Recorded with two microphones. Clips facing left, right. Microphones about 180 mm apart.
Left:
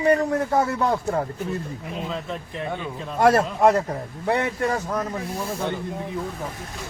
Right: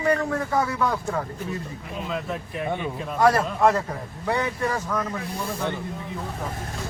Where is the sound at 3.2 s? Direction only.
25° left (ahead or behind).